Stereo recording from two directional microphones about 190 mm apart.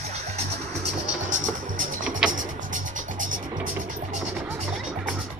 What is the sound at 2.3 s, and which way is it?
Music, 45° right (ahead or behind).